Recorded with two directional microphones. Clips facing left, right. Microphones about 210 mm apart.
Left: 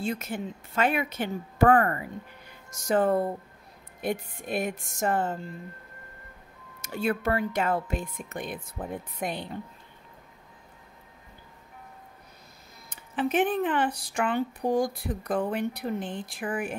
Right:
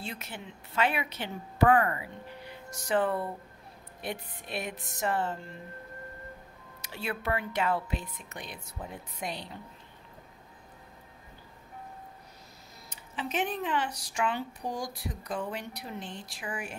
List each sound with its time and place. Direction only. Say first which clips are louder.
0.0 s speech: left 10 dB; 45° left (ahead or behind)
4.4 s speech: left 7 dB; 50° left (ahead or behind)
6.8 s speech: left 8 dB; 45° left (ahead or behind)
12.9 s speech: left 8 dB; 55° left (ahead or behind)